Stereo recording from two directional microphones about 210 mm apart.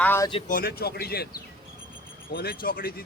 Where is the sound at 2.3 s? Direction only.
45° left (ahead or behind).